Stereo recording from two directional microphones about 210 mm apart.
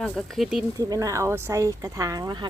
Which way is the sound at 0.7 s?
15° right (ahead or behind).